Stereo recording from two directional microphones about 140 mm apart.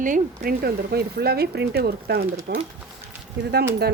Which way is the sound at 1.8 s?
90° right.